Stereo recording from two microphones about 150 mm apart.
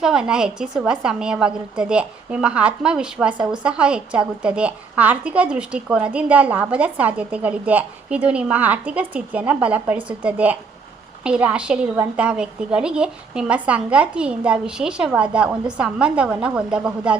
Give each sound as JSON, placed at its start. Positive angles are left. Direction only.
{"t": 0.0, "sound": "a woman's voice", "side_deg": -5}